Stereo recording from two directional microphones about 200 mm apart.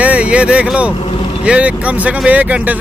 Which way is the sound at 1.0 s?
25° left (ahead or behind).